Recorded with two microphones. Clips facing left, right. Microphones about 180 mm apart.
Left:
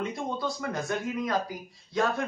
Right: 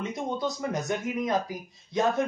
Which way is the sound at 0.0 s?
20° right (ahead or behind).